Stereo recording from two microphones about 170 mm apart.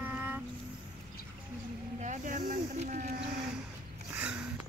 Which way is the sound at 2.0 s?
50° right (ahead or behind).